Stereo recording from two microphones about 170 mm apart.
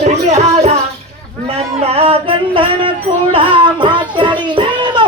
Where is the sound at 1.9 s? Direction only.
35° right (ahead or behind).